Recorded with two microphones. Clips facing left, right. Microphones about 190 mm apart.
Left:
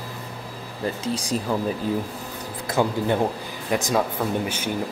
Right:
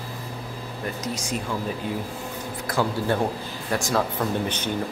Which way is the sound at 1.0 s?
35° left (ahead or behind).